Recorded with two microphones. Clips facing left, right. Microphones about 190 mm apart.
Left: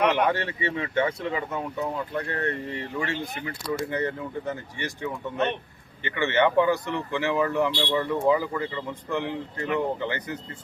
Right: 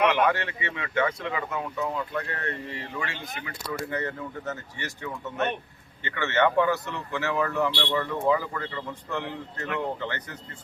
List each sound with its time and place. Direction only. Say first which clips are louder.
0.0 s speech: even; 15° left (ahead or behind)
0.3 s speech: left 1 dB; 30° left (ahead or behind)
3.9 s speech: left 3 dB; 15° left (ahead or behind)